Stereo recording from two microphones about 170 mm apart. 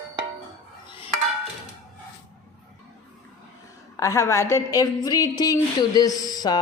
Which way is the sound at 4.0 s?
15° left (ahead or behind).